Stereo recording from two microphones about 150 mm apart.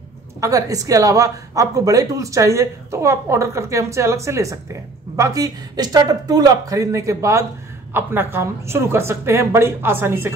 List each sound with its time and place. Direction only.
0.4 s speech: 25° right (ahead or behind)